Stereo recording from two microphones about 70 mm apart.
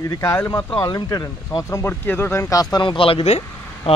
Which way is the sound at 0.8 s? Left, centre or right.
Left.